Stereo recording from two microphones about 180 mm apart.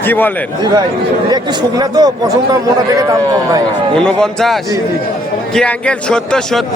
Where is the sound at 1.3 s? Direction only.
20° right (ahead or behind).